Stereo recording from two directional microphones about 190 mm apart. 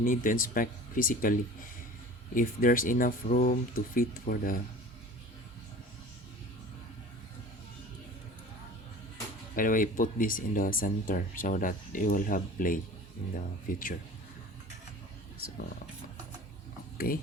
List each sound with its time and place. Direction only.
0.0 s speech: 45° left (ahead or behind)
9.6 s speech: 45° left (ahead or behind)
17.1 s speech: 50° left (ahead or behind)